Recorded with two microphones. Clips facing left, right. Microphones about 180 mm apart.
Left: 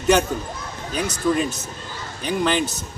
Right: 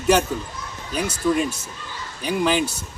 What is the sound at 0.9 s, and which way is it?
Speech, 5° right (ahead or behind).